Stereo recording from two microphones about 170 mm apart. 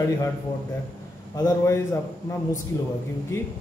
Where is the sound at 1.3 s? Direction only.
20° left (ahead or behind).